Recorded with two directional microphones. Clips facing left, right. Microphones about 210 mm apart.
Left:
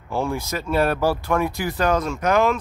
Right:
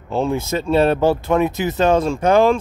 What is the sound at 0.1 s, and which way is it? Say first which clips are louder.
Speech: right 5 dB; 20° right (ahead or behind).